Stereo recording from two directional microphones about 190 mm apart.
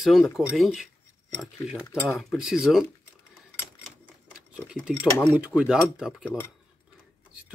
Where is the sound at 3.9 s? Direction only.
5° right (ahead or behind).